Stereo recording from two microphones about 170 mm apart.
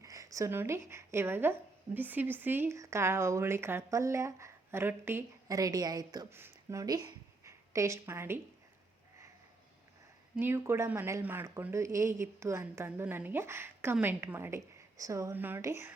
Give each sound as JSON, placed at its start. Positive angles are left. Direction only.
{"t": 0.0, "sound": "speech", "side_deg": -20}
{"t": 10.3, "sound": "speech", "side_deg": -15}